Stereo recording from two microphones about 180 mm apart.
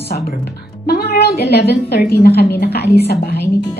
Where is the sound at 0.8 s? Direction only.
60° left (ahead or behind).